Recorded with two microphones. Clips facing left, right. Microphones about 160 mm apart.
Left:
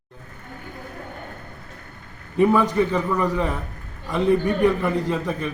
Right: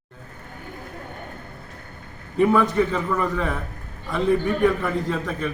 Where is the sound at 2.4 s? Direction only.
5° left (ahead or behind).